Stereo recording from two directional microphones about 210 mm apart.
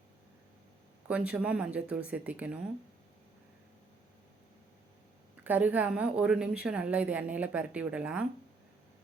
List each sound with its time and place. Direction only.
1.0 s speech: 5° right (ahead or behind)
5.4 s a woman's voice: 10° right (ahead or behind)